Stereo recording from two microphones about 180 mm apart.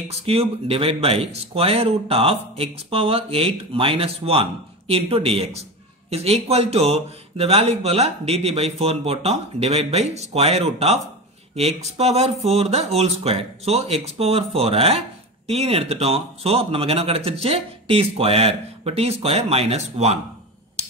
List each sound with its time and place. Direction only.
0.1 s speech: 35° right (ahead or behind)